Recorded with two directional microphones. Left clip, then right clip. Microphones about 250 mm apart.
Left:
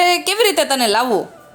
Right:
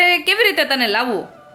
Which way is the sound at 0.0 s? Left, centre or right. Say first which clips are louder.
Even; centre.